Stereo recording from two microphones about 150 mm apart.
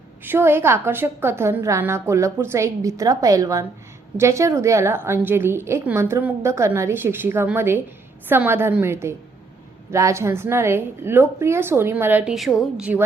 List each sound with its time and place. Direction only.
0.3 s a woman's voice: 15° right (ahead or behind)